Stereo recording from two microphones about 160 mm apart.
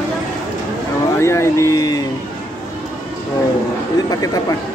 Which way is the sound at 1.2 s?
15° left (ahead or behind).